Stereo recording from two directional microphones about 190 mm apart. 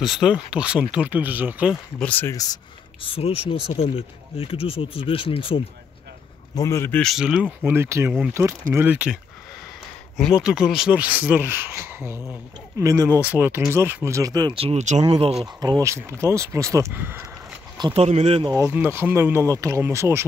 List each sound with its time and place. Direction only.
0.0 s speech: centre (ahead or behind)
2.0 s speech: 10° left (ahead or behind); by 5.6 s 30° left (ahead or behind)
6.5 s speech: 15° left (ahead or behind); by 15.3 s 30° right (ahead or behind)
15.6 s speech: 20° right (ahead or behind)
17.7 s speech: 25° right (ahead or behind)
18.0 s speech: 35° right (ahead or behind)
18.5 s speech: 15° right (ahead or behind)